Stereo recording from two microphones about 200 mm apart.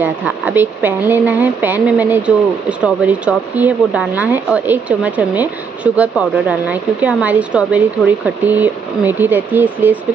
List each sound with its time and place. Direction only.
0.0 s speech: 10° right (ahead or behind)